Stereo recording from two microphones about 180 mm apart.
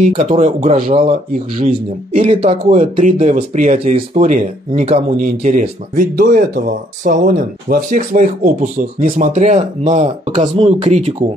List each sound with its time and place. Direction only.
0.1 s speech: 40° right (ahead or behind)
2.1 s speech: 35° right (ahead or behind)
2.7 s speech: 45° right (ahead or behind)